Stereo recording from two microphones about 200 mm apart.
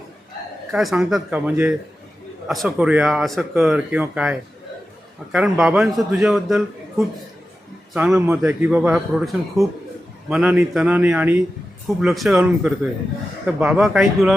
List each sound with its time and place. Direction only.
0.7 s a man's voice: centre (ahead or behind)
7.9 s a man's voice: 5° right (ahead or behind)